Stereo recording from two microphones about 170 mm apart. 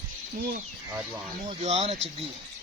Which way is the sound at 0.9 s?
15° right (ahead or behind).